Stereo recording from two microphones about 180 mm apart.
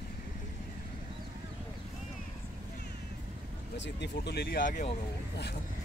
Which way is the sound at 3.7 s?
75° left (ahead or behind).